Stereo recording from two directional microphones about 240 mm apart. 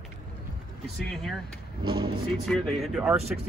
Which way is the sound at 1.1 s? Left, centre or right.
Centre.